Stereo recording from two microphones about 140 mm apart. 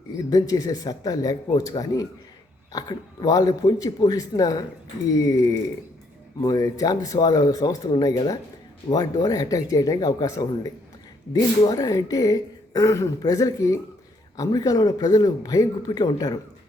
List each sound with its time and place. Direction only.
0.3 s speech: 25° left (ahead or behind)